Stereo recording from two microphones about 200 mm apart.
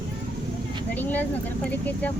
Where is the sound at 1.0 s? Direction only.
10° left (ahead or behind).